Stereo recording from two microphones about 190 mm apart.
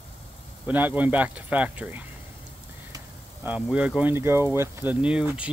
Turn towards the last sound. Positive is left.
turn(degrees=-5)  # may be behind; listen again after turning